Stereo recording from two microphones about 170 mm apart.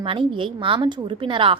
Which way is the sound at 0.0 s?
30° right (ahead or behind).